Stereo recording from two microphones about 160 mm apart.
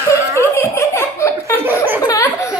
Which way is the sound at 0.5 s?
15° left (ahead or behind).